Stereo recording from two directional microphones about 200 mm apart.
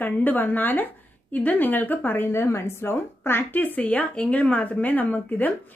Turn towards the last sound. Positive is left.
turn(degrees=10)  # may be behind; listen again after turning